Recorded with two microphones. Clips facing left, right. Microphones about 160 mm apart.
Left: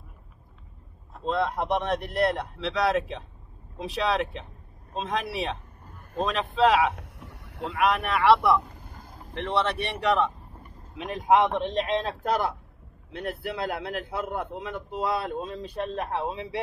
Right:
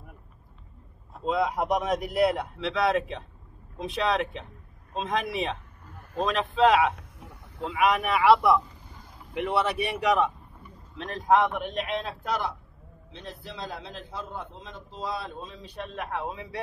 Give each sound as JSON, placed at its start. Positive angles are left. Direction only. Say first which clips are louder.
{"t": 1.1, "sound": "speech", "louder": "right 1 dB", "side_deg": -5}
{"t": 7.0, "sound": "a sound", "louder": "left 2 dB", "side_deg": 70}
{"t": 7.7, "sound": "speech", "louder": "right 1 dB", "side_deg": 0}
{"t": 8.6, "sound": "a sound", "louder": "left 3 dB", "side_deg": 50}
{"t": 9.3, "sound": "speech", "louder": "even", "side_deg": -10}
{"t": 11.2, "sound": "speech", "louder": "left 1 dB", "side_deg": 20}
{"t": 11.7, "sound": "speech", "louder": "left 4 dB", "side_deg": 35}
{"t": 13.1, "sound": "a man's voice", "louder": "left 9 dB", "side_deg": 60}
{"t": 15.9, "sound": "speech", "louder": "even", "side_deg": 30}